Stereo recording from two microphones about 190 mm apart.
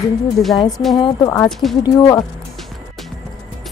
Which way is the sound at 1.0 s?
20° left (ahead or behind).